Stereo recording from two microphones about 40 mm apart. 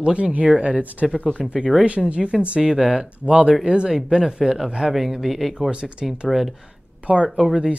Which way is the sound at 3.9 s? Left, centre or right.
Centre.